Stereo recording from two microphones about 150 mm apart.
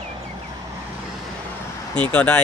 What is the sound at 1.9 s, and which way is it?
Speech, 10° left (ahead or behind).